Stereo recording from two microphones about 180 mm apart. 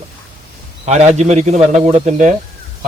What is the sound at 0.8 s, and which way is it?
A man's voice, 40° right (ahead or behind).